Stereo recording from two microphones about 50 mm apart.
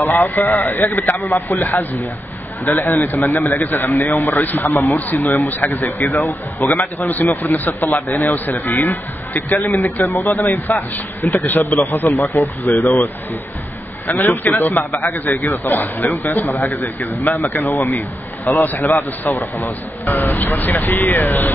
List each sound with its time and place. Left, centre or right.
0.0 s a man's voice: left
11.6 s a man's voice: left
12.6 s a man's voice: left
14.0 s a man's voice: left